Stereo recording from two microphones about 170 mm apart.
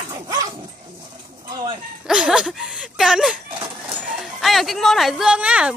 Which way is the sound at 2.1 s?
5° right (ahead or behind).